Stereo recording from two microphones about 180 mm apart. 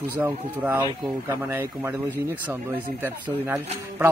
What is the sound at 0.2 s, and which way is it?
Speech, 10° right (ahead or behind).